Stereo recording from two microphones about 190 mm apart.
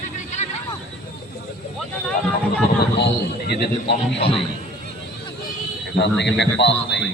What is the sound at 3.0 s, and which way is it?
A man's voice, 60° left (ahead or behind).